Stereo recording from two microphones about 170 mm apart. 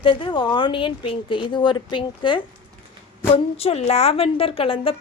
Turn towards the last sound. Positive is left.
turn(degrees=35)  # may be behind; listen again after turning